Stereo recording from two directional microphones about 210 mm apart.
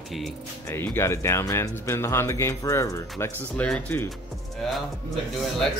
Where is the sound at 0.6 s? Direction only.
10° left (ahead or behind).